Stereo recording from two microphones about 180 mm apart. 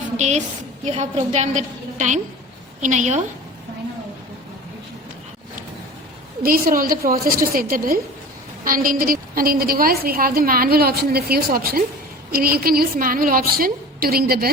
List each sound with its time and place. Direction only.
0.2 s a woman's voice: 40° right (ahead or behind)
6.4 s a woman's voice: 50° right (ahead or behind)